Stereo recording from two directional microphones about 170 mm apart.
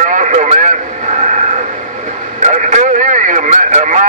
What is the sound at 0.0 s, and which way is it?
Radio, 50° right (ahead or behind).